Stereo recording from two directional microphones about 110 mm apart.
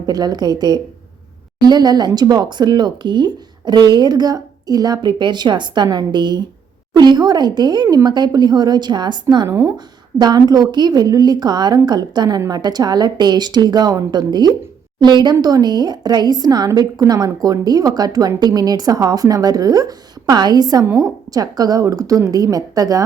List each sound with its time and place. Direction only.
0.0 s a woman's voice: 35° right (ahead or behind)